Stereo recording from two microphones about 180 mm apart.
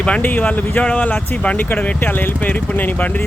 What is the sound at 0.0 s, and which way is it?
Speech, 10° left (ahead or behind).